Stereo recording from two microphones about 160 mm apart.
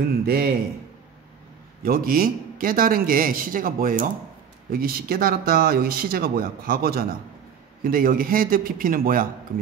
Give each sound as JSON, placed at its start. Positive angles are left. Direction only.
{"t": 0.2, "sound": "speech", "side_deg": -75}
{"t": 1.9, "sound": "a man's voice", "side_deg": -65}